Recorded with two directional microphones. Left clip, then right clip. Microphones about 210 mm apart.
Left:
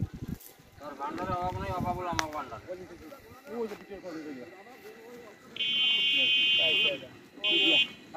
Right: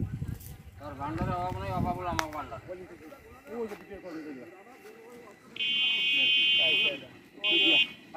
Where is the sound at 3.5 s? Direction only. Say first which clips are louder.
Left 1 dB; 40° right (ahead or behind).